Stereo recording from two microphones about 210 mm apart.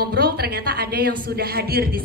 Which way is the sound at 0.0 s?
45° right (ahead or behind).